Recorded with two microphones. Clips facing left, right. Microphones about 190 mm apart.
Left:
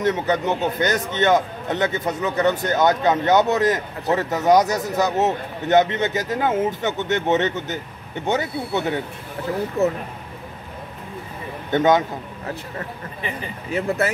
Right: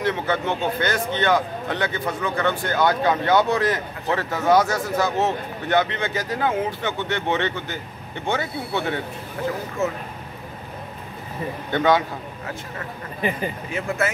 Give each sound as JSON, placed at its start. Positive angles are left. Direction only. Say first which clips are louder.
{"t": 0.0, "sound": "a man's voice", "louder": "left 3 dB", "side_deg": 20}
{"t": 9.8, "sound": "speech", "louder": "left 5 dB", "side_deg": 35}
{"t": 11.7, "sound": "a man's voice", "louder": "left 2 dB", "side_deg": 20}
{"t": 13.7, "sound": "speech", "louder": "left 5 dB", "side_deg": 35}